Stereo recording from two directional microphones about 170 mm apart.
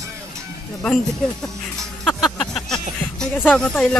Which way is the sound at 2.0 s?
5° left (ahead or behind).